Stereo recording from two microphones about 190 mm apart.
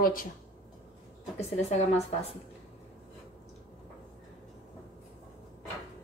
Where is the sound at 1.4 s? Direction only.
35° left (ahead or behind).